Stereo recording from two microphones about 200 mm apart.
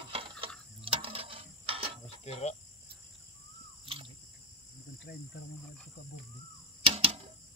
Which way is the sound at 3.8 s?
30° right (ahead or behind).